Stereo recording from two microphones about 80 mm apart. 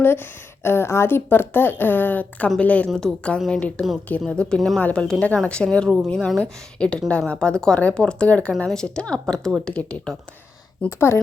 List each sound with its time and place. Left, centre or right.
0.0 s a woman's voice: left; by 10.2 s centre
10.8 s a woman's voice: left